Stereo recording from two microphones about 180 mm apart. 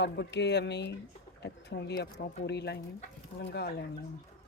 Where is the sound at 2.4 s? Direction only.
65° left (ahead or behind).